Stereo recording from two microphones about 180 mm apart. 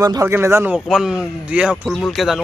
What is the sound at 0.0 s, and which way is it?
Speech, 15° right (ahead or behind).